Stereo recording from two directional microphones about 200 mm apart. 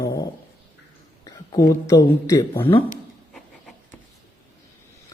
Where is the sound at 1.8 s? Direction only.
15° left (ahead or behind).